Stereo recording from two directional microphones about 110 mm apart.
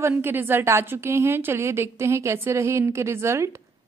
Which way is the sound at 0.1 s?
20° right (ahead or behind).